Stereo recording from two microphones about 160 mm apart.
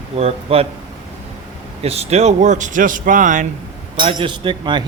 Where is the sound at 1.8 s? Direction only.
40° right (ahead or behind).